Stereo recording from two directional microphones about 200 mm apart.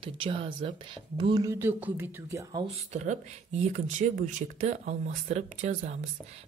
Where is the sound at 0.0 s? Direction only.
25° right (ahead or behind).